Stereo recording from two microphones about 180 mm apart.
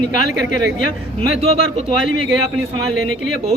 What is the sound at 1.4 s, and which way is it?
Speech, 35° right (ahead or behind).